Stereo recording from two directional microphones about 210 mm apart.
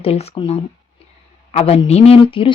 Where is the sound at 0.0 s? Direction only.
30° left (ahead or behind).